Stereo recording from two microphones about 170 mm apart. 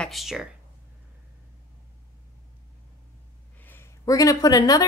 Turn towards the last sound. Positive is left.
turn(degrees=20)  # may be behind; listen again after turning